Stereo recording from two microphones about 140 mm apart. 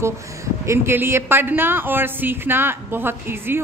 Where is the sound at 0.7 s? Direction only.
15° right (ahead or behind).